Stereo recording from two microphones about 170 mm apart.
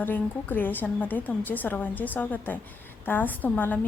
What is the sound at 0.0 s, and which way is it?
A woman's voice, 10° left (ahead or behind).